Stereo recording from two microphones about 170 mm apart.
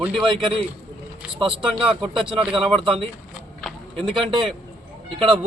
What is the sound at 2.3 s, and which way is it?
Speech, 30° right (ahead or behind).